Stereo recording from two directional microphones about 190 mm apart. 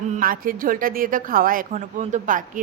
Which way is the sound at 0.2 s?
50° right (ahead or behind).